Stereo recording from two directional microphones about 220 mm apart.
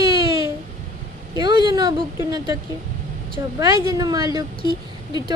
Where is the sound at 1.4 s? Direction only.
20° right (ahead or behind).